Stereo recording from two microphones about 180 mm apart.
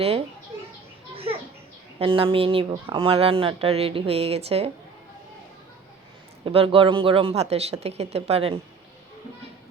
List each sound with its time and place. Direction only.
1.1 s children playing: 30° right (ahead or behind)
2.0 s speech: 30° right (ahead or behind)
6.4 s speech: 30° right (ahead or behind)